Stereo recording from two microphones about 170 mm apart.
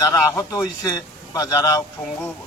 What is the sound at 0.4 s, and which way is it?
A man's voice, 20° left (ahead or behind).